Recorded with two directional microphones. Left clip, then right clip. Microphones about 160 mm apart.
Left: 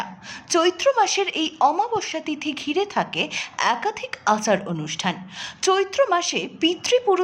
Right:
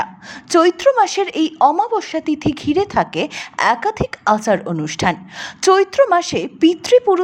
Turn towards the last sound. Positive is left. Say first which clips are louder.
# right 7 dB
turn(degrees=-30)  # may be behind; listen again after turning